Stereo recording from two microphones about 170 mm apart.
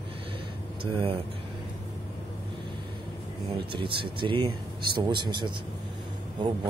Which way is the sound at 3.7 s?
30° right (ahead or behind).